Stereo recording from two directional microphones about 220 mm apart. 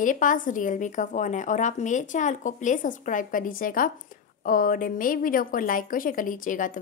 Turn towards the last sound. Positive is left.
turn(degrees=35)  # may be behind; listen again after turning